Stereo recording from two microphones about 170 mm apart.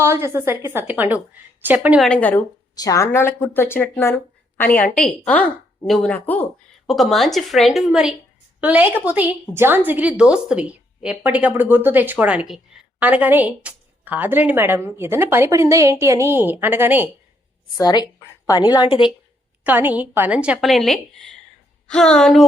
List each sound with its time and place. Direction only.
0.0 s a woman's voice: 15° right (ahead or behind)
2.0 s a woman's voice: 5° left (ahead or behind)
2.7 s a woman's voice: 20° left (ahead or behind); by 17.1 s 10° right (ahead or behind)
17.7 s a woman's voice: 20° left (ahead or behind)
19.6 s a woman's voice: 10° right (ahead or behind)